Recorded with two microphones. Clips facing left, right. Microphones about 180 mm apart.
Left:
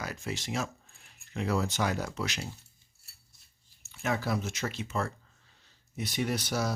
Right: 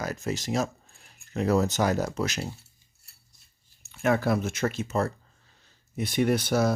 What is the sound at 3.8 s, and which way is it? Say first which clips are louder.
Speech: right 7 dB; 55° right (ahead or behind).